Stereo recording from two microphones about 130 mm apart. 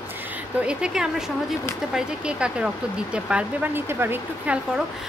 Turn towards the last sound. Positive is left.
turn(degrees=-10)  # may be behind; listen again after turning